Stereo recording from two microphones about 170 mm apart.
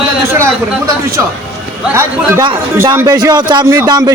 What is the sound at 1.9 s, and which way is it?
A man's voice, 15° right (ahead or behind).